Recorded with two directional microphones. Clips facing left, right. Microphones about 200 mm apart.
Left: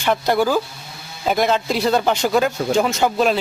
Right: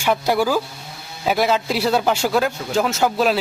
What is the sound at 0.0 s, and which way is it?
A man's voice, 10° right (ahead or behind).